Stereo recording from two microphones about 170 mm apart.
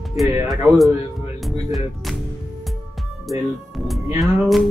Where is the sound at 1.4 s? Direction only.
Centre (ahead or behind).